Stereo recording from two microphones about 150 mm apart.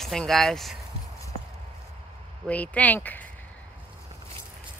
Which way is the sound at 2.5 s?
10° left (ahead or behind).